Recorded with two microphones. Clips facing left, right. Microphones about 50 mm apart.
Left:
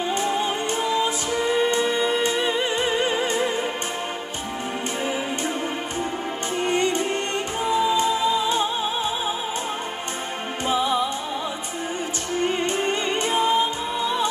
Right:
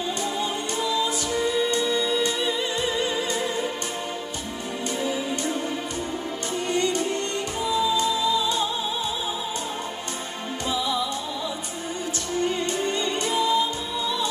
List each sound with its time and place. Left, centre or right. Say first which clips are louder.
0.2 s music: left 4 dB; left
6.6 s music: left 2 dB; left
10.7 s music: left 4 dB; left
12.4 s music: left 2 dB; left